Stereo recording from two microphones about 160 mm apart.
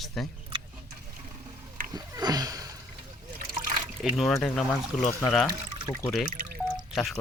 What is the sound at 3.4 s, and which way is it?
Trickle, 55° right (ahead or behind).